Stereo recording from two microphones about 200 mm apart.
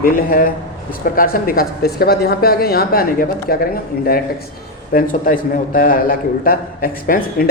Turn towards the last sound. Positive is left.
turn(degrees=45)  # may be behind; listen again after turning